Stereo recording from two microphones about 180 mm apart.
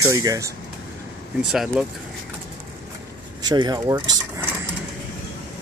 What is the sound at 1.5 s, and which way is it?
Speech, centre (ahead or behind).